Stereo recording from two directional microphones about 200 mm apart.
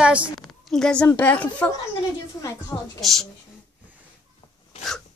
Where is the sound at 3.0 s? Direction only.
Centre (ahead or behind).